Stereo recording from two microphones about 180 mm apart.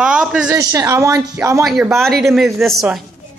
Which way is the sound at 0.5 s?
15° right (ahead or behind).